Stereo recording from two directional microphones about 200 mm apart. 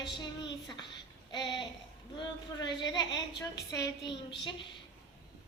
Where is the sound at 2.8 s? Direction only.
20° left (ahead or behind).